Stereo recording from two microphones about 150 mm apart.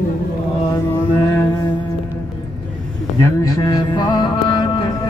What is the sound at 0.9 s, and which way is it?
Mantra, 20° left (ahead or behind).